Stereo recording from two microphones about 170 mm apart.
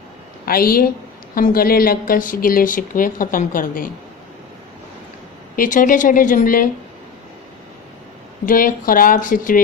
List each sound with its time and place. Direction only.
0.4 s a woman's voice: 60° left (ahead or behind)
5.5 s speech: 50° left (ahead or behind)
8.4 s speech: 55° left (ahead or behind)